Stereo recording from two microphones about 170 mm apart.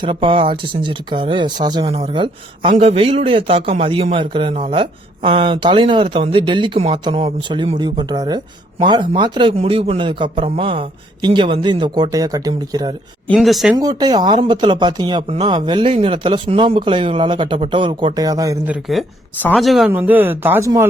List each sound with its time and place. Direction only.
0.0 s a man's voice: 30° right (ahead or behind)
13.2 s speech: 5° left (ahead or behind)
13.7 s speech: 25° right (ahead or behind)
18.7 s speech: centre (ahead or behind)
19.9 s speech: 10° right (ahead or behind)